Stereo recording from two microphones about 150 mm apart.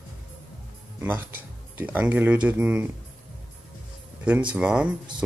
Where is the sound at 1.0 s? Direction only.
15° right (ahead or behind).